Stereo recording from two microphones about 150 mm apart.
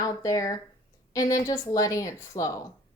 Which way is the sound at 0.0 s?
25° left (ahead or behind).